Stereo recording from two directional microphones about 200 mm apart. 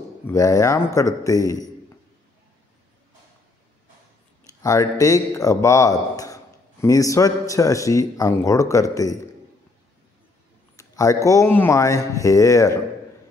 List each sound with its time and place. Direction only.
0.3 s speech: 15° left (ahead or behind)
4.6 s speech: 15° left (ahead or behind)
10.8 s speech: 15° left (ahead or behind)